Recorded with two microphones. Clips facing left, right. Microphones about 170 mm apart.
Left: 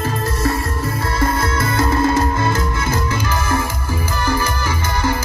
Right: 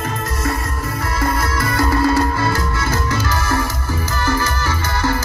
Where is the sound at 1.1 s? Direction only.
25° left (ahead or behind).